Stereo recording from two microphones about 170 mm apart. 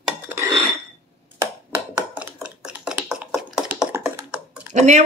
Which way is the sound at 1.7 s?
5° right (ahead or behind).